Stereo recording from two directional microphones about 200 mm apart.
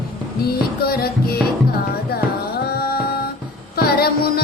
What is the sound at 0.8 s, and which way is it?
Music, 50° left (ahead or behind).